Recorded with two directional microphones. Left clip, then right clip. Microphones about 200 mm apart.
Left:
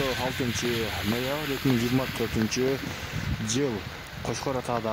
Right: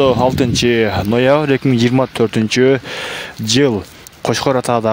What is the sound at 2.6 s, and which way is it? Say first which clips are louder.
Speech: right 19 dB; 45° right (ahead or behind).